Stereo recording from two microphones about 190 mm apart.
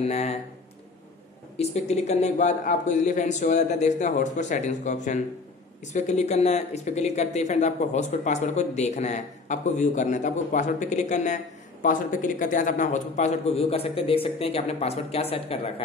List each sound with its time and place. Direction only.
0.0 s speech: 35° left (ahead or behind)
1.6 s speech: 35° left (ahead or behind)